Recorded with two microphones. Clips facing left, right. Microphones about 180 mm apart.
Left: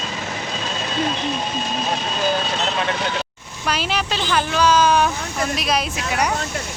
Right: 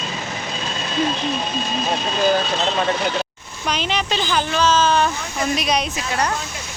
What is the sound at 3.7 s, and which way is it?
Speech, 5° left (ahead or behind).